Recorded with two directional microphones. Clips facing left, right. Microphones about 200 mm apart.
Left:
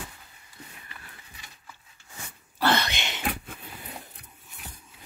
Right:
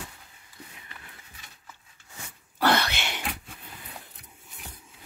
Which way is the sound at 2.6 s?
10° right (ahead or behind).